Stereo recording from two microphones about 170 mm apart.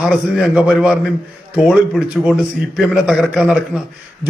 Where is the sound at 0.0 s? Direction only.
5° right (ahead or behind).